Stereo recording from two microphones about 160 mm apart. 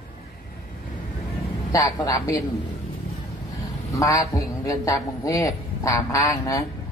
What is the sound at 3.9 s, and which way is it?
A man's voice, 20° left (ahead or behind).